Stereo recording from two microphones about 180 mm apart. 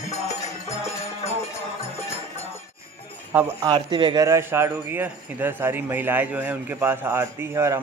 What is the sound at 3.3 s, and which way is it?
Speech, 25° right (ahead or behind).